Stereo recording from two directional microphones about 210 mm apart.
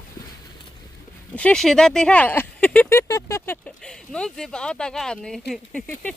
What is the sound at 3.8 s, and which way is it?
Speech, 5° left (ahead or behind).